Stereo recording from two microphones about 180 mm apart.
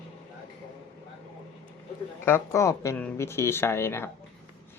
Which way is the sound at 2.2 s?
15° left (ahead or behind).